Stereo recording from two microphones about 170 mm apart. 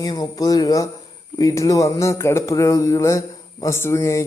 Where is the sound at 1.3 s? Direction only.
20° left (ahead or behind).